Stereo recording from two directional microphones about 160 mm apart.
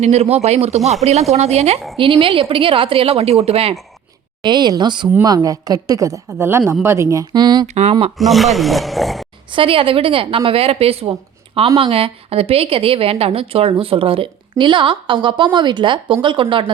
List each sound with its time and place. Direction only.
0.0 s a woman's voice: 40° right (ahead or behind)
4.4 s a woman's voice: 25° right (ahead or behind)
7.7 s speech: 40° right (ahead or behind)
8.2 s speech: centre (ahead or behind)
9.5 s a woman's voice: 35° right (ahead or behind)